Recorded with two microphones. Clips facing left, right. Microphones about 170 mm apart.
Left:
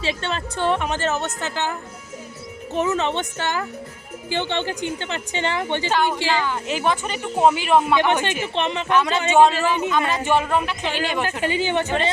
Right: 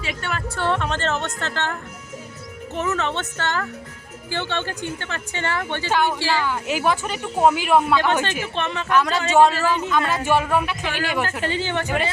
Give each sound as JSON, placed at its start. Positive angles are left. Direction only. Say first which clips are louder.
{"t": 0.0, "sound": "a woman's voice", "louder": "left 3 dB", "side_deg": 25}
{"t": 6.5, "sound": "speech", "louder": "right 1 dB", "side_deg": -10}
{"t": 7.9, "sound": "a woman's voice", "louder": "left 1 dB", "side_deg": 15}